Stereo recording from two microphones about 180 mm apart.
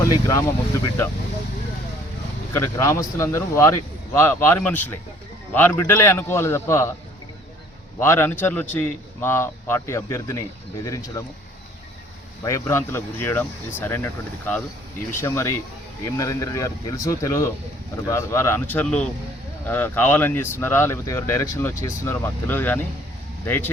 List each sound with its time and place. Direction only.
0.0 s speech: 15° left (ahead or behind)
2.5 s speech: 15° left (ahead or behind)
7.9 s speech: 15° left (ahead or behind)
12.4 s speech: 20° left (ahead or behind)